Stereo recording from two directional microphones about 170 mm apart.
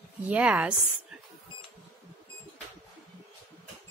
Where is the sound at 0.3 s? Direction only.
5° right (ahead or behind).